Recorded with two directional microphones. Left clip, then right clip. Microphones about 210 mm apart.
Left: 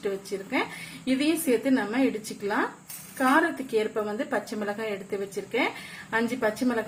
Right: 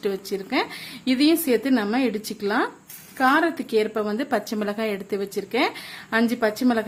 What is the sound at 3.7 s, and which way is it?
Speech, 55° right (ahead or behind).